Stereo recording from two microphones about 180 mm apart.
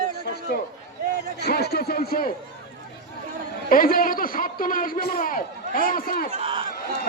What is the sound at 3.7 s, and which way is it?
A man's voice, 50° left (ahead or behind).